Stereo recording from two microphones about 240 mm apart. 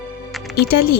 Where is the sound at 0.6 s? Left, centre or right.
Left.